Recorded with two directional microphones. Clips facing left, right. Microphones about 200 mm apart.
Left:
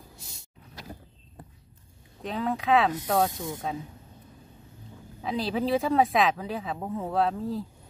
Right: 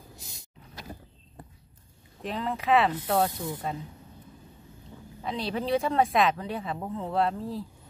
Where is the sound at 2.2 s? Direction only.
Centre (ahead or behind).